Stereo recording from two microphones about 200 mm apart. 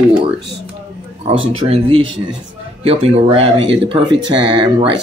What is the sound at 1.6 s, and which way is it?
Speech, 25° right (ahead or behind).